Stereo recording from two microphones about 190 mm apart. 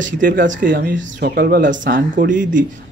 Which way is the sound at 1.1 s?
55° right (ahead or behind).